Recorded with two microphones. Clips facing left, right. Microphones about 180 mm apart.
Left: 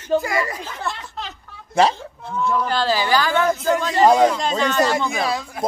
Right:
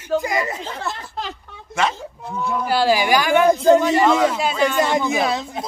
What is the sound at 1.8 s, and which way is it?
Speech, 35° left (ahead or behind).